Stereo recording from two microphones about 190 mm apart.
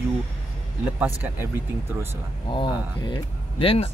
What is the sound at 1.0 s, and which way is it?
Speech, 10° right (ahead or behind).